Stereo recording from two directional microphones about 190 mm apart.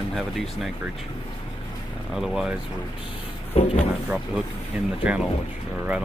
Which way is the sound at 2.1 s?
Centre (ahead or behind).